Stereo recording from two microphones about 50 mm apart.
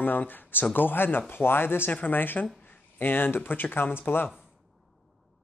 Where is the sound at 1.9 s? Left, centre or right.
Left.